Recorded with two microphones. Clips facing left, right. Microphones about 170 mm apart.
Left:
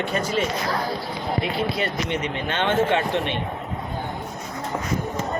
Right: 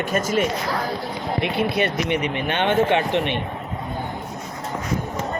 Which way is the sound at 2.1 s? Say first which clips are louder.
Right 3 dB; 15° right (ahead or behind).